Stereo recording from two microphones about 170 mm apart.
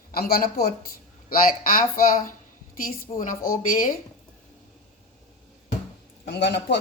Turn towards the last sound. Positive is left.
turn(degrees=85)